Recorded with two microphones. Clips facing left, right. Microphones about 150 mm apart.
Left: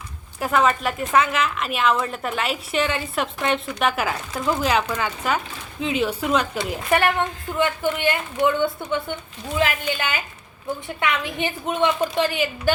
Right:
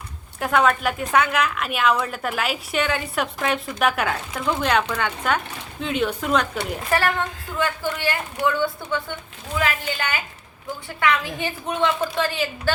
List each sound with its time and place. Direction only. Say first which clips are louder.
0.3 s a woman's voice: even; centre (ahead or behind)
7.6 s a woman's voice: left 3 dB; 20° left (ahead or behind)